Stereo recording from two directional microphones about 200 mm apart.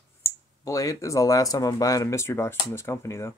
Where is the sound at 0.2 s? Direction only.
15° left (ahead or behind).